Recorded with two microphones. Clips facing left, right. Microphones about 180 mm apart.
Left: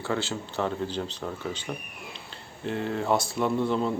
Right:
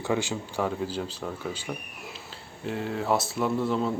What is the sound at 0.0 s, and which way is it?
Speech, 15° right (ahead or behind).